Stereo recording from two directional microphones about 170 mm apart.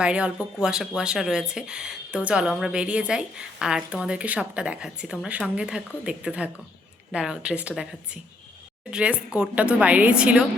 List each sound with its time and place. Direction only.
0.0 s a woman's voice: 5° right (ahead or behind)